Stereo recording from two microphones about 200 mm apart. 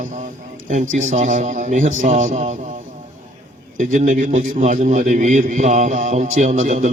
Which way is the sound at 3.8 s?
40° right (ahead or behind).